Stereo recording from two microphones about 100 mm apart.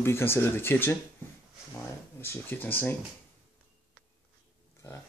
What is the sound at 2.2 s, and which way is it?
Speech, 20° left (ahead or behind).